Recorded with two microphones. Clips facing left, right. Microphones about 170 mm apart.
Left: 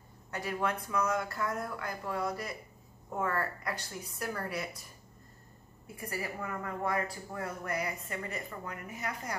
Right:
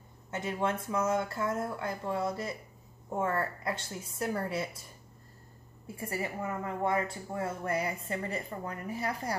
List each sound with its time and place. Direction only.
0.3 s a woman's voice: 25° right (ahead or behind)
5.9 s a woman's voice: 25° right (ahead or behind)